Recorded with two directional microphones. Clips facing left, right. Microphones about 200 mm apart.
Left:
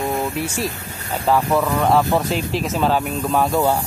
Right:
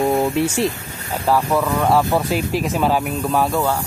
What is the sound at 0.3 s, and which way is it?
Speech, 25° right (ahead or behind).